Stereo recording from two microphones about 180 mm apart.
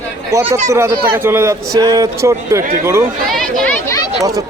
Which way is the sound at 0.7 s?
15° right (ahead or behind).